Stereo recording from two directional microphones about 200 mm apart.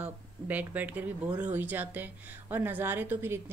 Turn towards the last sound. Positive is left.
turn(degrees=-10)  # may be behind; listen again after turning